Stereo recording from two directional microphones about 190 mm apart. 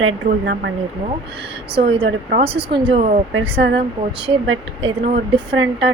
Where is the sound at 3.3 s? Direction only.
65° right (ahead or behind).